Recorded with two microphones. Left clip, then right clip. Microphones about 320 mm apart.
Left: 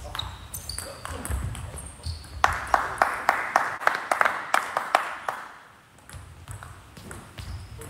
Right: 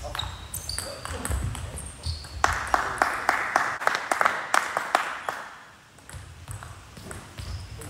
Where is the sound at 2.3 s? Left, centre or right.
Left.